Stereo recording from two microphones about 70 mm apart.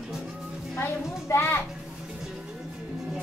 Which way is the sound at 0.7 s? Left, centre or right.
Left.